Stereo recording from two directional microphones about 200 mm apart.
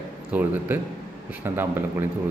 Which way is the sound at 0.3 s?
10° right (ahead or behind).